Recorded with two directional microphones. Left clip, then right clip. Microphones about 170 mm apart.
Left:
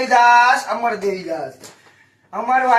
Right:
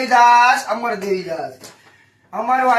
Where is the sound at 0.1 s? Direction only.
15° right (ahead or behind).